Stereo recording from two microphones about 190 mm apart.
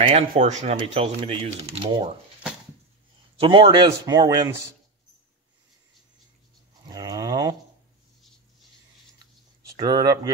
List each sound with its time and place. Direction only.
0.3 s speech: 40° right (ahead or behind)
3.3 s a man's voice: 25° right (ahead or behind)
6.9 s a sound: 20° right (ahead or behind)
9.8 s a man's voice: 20° right (ahead or behind)